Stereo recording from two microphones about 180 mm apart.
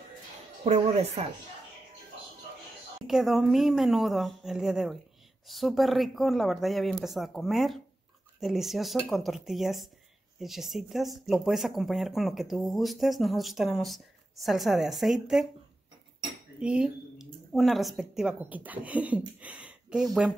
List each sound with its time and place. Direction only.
0.7 s a woman's voice: 35° right (ahead or behind)
3.1 s speech: centre (ahead or behind)
16.5 s speech: 5° right (ahead or behind)